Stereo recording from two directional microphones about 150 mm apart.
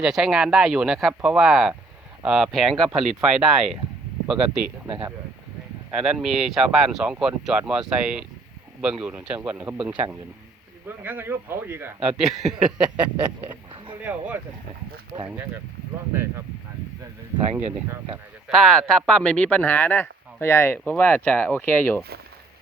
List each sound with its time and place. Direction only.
0.0 s a man's voice: 5° right (ahead or behind)
12.1 s a man's voice: centre (ahead or behind)
17.0 s speech: 30° right (ahead or behind)
18.4 s speech: centre (ahead or behind)